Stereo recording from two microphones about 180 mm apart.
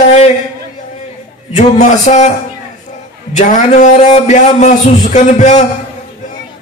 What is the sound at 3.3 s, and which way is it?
A man's voice, 45° left (ahead or behind).